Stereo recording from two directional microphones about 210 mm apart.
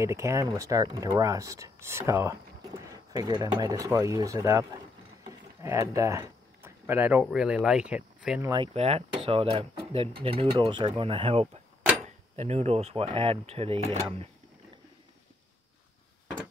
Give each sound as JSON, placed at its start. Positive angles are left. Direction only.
{"t": 0.0, "sound": "speech", "side_deg": -15}
{"t": 8.5, "sound": "speech", "side_deg": -25}